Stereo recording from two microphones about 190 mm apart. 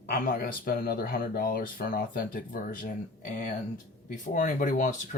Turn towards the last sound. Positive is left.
turn(degrees=40)  # may be behind; listen again after turning